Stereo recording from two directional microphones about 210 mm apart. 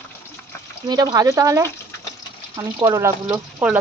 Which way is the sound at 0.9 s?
20° right (ahead or behind).